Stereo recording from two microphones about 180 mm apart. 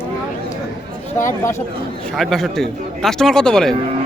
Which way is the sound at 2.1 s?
Centre (ahead or behind).